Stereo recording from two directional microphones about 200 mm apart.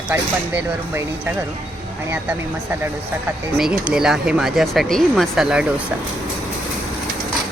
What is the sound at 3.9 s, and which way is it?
Speech, 5° right (ahead or behind).